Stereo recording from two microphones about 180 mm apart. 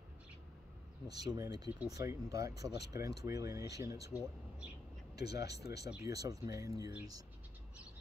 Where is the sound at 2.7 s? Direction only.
65° left (ahead or behind).